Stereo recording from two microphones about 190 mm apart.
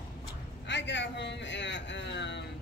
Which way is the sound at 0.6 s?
70° left (ahead or behind).